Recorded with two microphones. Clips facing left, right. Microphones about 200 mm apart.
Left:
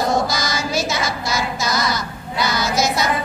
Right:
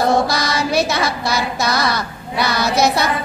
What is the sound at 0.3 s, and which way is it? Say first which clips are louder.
Child singing: right 4 dB; 60° right (ahead or behind).